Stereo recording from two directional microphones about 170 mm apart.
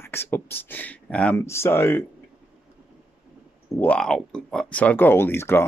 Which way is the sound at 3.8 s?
5° left (ahead or behind).